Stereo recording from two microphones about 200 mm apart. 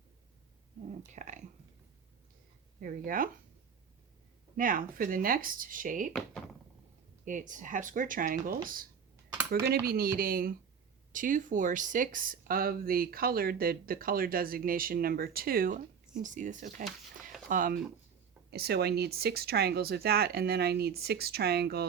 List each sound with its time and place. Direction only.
1.0 s speech: 35° right (ahead or behind)
2.8 s speech: 45° right (ahead or behind)
4.5 s speech: 45° right (ahead or behind)
7.3 s speech: 40° right (ahead or behind)